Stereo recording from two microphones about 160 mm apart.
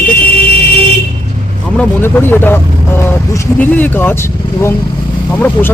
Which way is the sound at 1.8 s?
10° left (ahead or behind).